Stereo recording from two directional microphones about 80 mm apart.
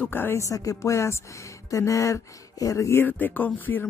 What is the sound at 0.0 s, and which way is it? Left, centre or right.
Speech, left.